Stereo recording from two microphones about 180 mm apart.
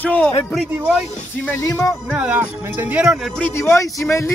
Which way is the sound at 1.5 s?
15° left (ahead or behind).